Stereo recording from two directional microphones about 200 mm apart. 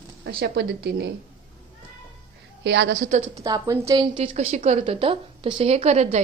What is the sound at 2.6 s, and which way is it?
Speech, 60° right (ahead or behind).